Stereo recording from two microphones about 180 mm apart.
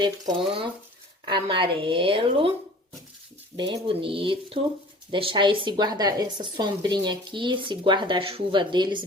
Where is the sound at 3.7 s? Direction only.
30° right (ahead or behind).